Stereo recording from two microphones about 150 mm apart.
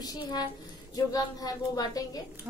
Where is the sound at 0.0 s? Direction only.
25° left (ahead or behind).